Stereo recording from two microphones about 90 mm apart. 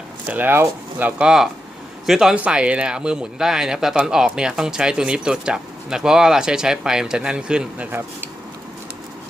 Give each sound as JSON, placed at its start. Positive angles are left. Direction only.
{"t": 0.3, "sound": "speech", "side_deg": -20}
{"t": 2.0, "sound": "speech", "side_deg": -5}